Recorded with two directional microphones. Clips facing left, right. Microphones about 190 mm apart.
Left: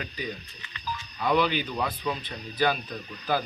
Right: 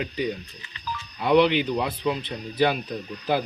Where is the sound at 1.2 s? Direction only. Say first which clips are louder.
Right 6 dB; 25° right (ahead or behind).